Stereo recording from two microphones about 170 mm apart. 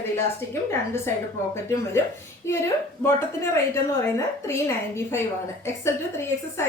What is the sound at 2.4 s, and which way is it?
A woman's voice, 15° left (ahead or behind).